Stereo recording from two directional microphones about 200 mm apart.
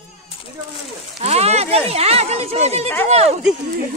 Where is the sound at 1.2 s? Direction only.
30° right (ahead or behind).